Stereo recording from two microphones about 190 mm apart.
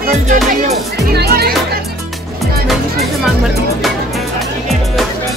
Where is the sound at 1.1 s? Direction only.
55° right (ahead or behind).